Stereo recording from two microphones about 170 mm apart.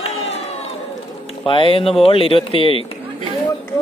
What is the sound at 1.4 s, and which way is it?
Speech, 30° left (ahead or behind).